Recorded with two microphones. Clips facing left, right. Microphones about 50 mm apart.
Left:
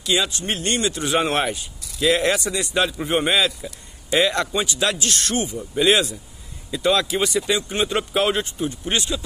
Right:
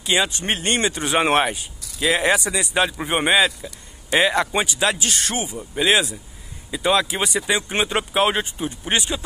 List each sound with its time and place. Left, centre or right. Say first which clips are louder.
0.0 s speech: right 1 dB; right
3.6 s speech: left 1 dB; centre
4.1 s a man's voice: right 1 dB; centre
5.6 s a man's voice: even; centre; by 7.8 s right
8.0 s speech: right 1 dB; centre